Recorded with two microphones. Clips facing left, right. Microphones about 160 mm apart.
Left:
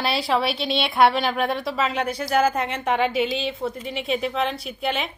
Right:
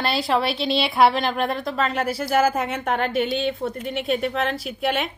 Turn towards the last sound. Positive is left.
turn(degrees=0)  # may be behind; listen again after turning